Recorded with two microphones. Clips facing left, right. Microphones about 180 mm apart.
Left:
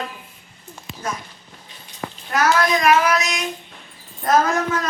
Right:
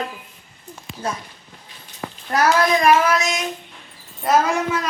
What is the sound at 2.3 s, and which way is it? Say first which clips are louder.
A child's voice: right 1 dB; 30° right (ahead or behind).